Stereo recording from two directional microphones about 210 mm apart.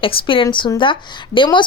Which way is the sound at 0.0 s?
25° left (ahead or behind).